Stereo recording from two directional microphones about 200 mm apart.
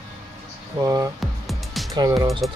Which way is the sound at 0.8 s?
15° right (ahead or behind).